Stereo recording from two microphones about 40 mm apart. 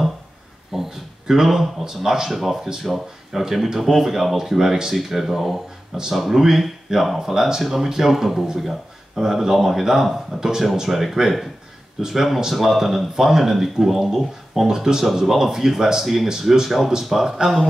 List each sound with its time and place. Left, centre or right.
0.7 s speech: centre
4.6 s speech: centre